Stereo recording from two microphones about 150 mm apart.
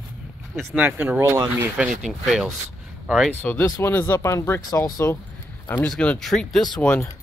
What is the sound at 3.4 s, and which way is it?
Speech, 10° left (ahead or behind).